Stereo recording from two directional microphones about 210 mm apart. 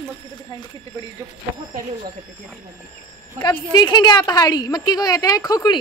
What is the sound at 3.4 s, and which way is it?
A woman's voice, 20° left (ahead or behind).